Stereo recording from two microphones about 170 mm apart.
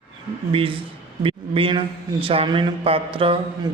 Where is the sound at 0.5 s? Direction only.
30° right (ahead or behind).